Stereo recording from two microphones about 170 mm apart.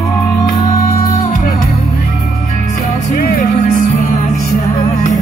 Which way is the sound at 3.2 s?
60° left (ahead or behind).